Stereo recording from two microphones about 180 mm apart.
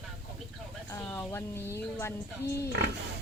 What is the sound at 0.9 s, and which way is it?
Speech, 15° left (ahead or behind).